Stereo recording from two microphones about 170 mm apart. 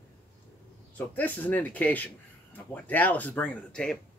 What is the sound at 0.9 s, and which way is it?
Speech, 10° left (ahead or behind).